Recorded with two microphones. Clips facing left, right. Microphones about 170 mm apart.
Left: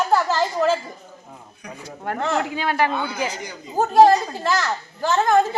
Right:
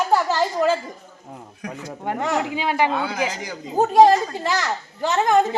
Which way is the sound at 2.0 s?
15° right (ahead or behind).